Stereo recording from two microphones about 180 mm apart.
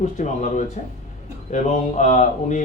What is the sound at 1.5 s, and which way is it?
A man's voice, 40° left (ahead or behind).